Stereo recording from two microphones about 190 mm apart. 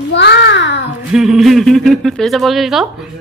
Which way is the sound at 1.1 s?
Centre (ahead or behind).